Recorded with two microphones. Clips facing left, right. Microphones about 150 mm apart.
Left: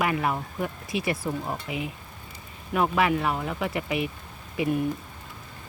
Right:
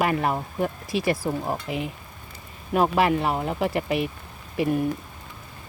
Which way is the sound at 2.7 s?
35° right (ahead or behind).